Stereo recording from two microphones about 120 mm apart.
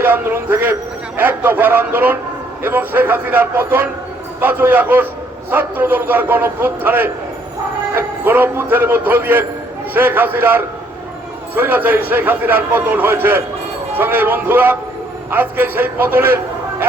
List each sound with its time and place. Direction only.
0.0 s a man's voice: 15° right (ahead or behind)